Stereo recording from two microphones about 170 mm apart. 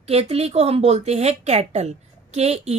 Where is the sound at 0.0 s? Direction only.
35° right (ahead or behind).